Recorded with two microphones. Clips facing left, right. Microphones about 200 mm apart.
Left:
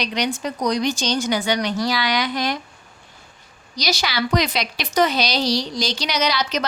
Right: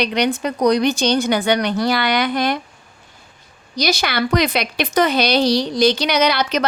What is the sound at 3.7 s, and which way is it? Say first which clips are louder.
Speech: right 4 dB; 55° right (ahead or behind).